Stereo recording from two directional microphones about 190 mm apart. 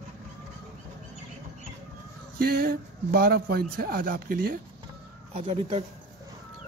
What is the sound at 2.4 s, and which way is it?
Speech, 50° right (ahead or behind).